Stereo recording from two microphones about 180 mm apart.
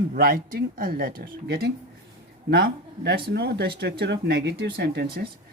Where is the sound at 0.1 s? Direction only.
50° right (ahead or behind); by 5.2 s 65° right (ahead or behind).